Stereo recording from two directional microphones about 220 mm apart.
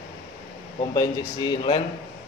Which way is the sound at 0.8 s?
20° left (ahead or behind).